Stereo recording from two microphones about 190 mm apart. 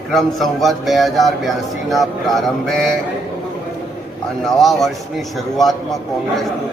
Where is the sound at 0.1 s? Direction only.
Centre (ahead or behind).